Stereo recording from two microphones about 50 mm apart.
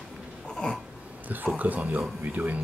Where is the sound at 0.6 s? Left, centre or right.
Centre.